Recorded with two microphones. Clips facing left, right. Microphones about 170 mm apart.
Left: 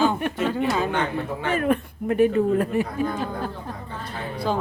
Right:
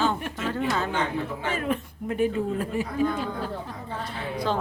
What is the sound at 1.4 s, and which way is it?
Speech, 55° left (ahead or behind).